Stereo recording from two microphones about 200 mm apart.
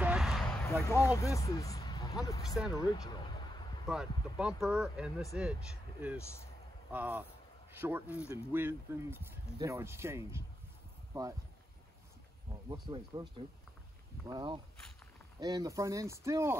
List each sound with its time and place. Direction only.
0.0 s a sound: 5° right (ahead or behind)
0.7 s speech: 15° left (ahead or behind)
2.7 s a sound: 20° left (ahead or behind)
3.8 s speech: 5° right (ahead or behind)
12.6 s speech: 20° right (ahead or behind)
14.2 s speech: 20° right (ahead or behind)